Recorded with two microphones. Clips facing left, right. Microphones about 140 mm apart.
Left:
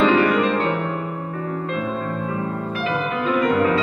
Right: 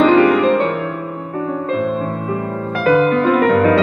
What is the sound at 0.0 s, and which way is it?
Music, 40° right (ahead or behind).